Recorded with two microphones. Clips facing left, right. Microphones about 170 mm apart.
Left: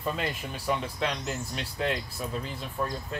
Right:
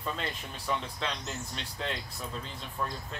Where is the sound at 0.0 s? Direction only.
10° left (ahead or behind).